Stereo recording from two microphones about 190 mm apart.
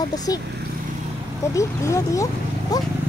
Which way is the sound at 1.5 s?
15° left (ahead or behind).